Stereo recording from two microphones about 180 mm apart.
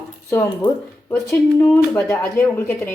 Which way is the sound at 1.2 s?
5° left (ahead or behind).